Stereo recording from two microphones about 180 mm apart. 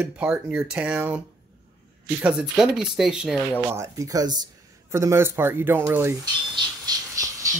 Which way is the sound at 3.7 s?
15° right (ahead or behind).